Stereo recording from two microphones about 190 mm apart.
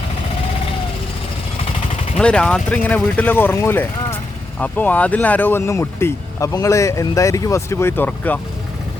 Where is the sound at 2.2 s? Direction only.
5° left (ahead or behind).